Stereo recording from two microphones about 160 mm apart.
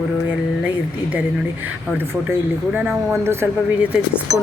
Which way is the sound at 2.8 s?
5° right (ahead or behind).